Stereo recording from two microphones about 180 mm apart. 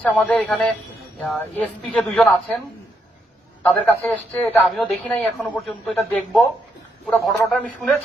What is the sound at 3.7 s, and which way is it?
A man's voice, 10° left (ahead or behind).